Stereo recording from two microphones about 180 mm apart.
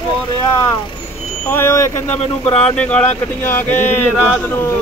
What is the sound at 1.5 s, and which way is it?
Speech, 15° left (ahead or behind).